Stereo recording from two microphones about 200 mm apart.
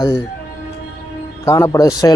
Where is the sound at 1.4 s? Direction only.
15° left (ahead or behind).